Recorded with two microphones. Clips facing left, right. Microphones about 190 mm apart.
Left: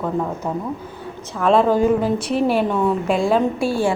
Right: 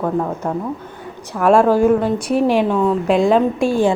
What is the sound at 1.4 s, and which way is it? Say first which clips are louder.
Speech: right 3 dB; 10° right (ahead or behind).